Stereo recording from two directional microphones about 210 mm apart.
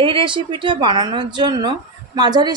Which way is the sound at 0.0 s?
25° right (ahead or behind).